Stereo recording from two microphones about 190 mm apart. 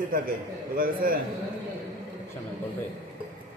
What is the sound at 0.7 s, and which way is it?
Speech, 50° right (ahead or behind).